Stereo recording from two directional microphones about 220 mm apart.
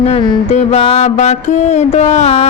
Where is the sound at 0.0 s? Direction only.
25° left (ahead or behind).